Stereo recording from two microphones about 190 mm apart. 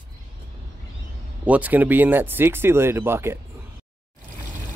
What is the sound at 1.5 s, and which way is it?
Speech, 10° right (ahead or behind).